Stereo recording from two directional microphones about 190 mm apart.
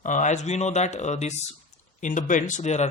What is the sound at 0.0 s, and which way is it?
Speech, 40° left (ahead or behind).